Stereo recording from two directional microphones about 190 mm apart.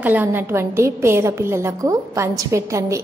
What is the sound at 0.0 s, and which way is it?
A woman's voice, 10° right (ahead or behind).